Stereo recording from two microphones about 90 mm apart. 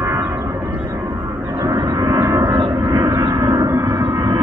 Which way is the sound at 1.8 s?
45° right (ahead or behind).